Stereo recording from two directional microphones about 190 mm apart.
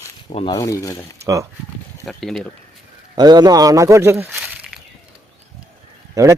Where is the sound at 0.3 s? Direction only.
30° left (ahead or behind).